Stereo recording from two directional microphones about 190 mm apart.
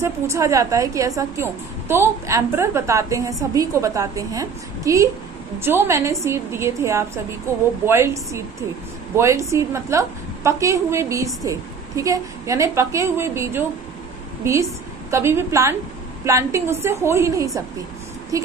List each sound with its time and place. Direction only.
0.0 s a woman's voice: 15° right (ahead or behind)